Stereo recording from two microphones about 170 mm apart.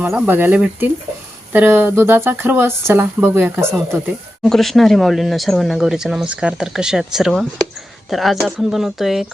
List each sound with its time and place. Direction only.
0.0 s speech: 10° right (ahead or behind)
4.4 s speech: centre (ahead or behind)